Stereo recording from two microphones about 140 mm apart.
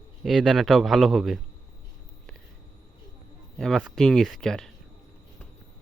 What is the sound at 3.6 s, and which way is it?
Speech, 5° left (ahead or behind).